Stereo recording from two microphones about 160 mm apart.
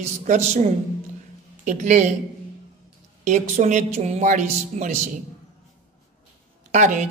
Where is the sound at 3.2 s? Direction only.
45° right (ahead or behind).